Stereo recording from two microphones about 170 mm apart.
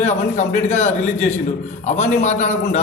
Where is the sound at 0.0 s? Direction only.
45° left (ahead or behind).